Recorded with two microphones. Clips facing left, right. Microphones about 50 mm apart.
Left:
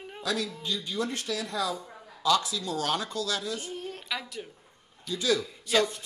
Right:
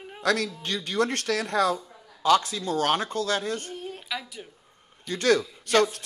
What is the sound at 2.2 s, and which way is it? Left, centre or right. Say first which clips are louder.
A man's voice: right 4 dB; right.